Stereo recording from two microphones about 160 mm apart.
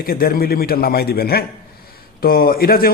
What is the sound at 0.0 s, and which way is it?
A man's voice, 65° left (ahead or behind).